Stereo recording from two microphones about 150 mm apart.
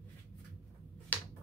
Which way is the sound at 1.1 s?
10° left (ahead or behind).